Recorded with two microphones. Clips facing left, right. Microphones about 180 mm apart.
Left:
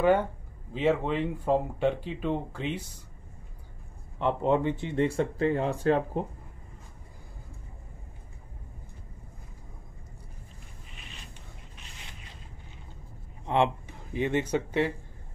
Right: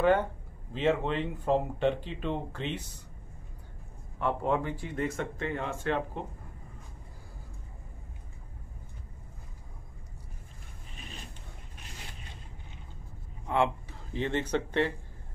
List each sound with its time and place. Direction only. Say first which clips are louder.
0.0 s speech: left 2 dB; 10° left (ahead or behind)
4.2 s speech: left 4 dB; 20° left (ahead or behind); by 6.2 s 40° left (ahead or behind)
13.5 s speech: left 2 dB; 20° left (ahead or behind)